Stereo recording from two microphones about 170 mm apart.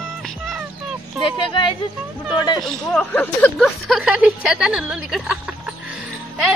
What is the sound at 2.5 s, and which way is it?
Speech, 5° left (ahead or behind).